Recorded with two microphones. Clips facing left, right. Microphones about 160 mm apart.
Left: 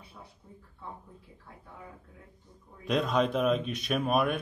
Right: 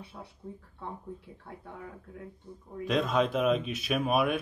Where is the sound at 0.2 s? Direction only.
65° right (ahead or behind).